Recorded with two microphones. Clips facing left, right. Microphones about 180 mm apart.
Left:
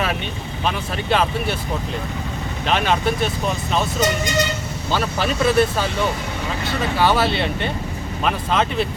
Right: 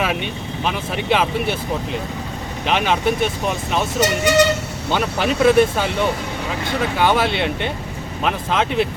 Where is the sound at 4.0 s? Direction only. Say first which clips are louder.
Right 9 dB; 75° right (ahead or behind).